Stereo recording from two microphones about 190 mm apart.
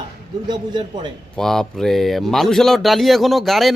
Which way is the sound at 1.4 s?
Centre (ahead or behind).